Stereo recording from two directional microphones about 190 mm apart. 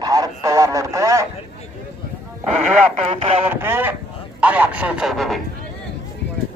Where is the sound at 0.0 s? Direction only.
20° right (ahead or behind).